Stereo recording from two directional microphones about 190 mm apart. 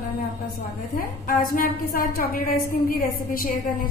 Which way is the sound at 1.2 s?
50° left (ahead or behind).